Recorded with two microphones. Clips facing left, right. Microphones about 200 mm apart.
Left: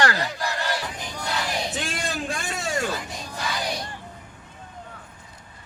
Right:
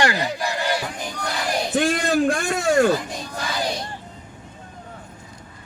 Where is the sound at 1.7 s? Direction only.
55° right (ahead or behind).